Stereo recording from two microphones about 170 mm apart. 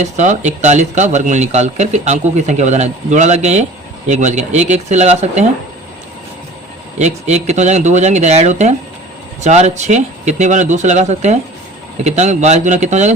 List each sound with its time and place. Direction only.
0.0 s speech: 45° right (ahead or behind)
7.0 s speech: 40° right (ahead or behind)